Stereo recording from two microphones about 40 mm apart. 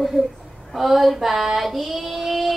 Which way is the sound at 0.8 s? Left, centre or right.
Centre.